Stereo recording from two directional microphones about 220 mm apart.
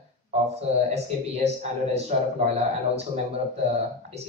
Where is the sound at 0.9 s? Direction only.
30° right (ahead or behind).